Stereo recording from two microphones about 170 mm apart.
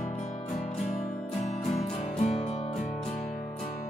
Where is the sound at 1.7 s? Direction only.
40° left (ahead or behind).